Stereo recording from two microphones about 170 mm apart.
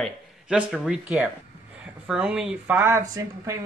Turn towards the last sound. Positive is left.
turn(degrees=-15)  # may be behind; listen again after turning